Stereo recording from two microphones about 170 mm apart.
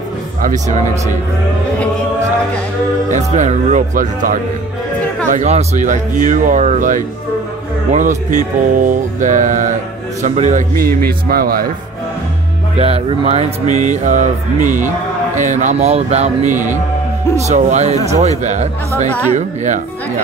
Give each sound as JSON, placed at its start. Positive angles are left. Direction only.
{"t": 0.4, "sound": "music", "side_deg": -45}
{"t": 3.1, "sound": "music", "side_deg": -45}
{"t": 5.3, "sound": "music", "side_deg": -40}
{"t": 10.8, "sound": "speech", "side_deg": -60}
{"t": 12.7, "sound": "music", "side_deg": -35}
{"t": 17.4, "sound": "speech", "side_deg": -45}
{"t": 18.4, "sound": "music", "side_deg": -45}